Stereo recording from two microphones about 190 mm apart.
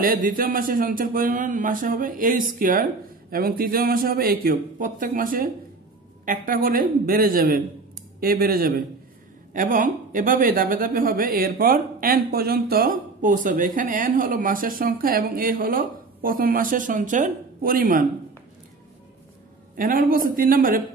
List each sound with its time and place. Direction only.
0.0 s speech: 45° right (ahead or behind)
19.8 s speech: 50° right (ahead or behind)